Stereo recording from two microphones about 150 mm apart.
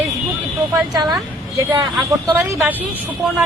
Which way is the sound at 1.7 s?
30° right (ahead or behind).